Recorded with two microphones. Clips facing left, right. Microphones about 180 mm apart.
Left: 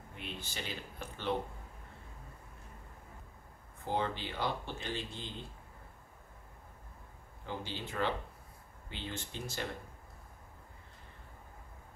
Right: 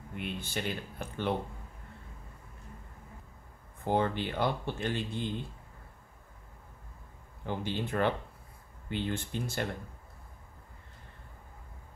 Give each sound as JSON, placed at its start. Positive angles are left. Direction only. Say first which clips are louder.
{"t": 0.1, "sound": "speech", "louder": "right 8 dB", "side_deg": -55}
{"t": 3.8, "sound": "speech", "louder": "right 6 dB", "side_deg": -55}
{"t": 7.4, "sound": "speech", "louder": "right 7 dB", "side_deg": -55}